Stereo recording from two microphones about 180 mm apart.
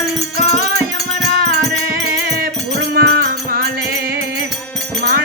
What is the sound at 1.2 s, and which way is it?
Music, 60° right (ahead or behind).